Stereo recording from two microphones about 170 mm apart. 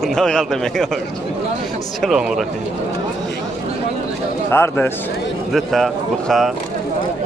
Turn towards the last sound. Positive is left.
turn(degrees=0)  # may be behind; listen again after turning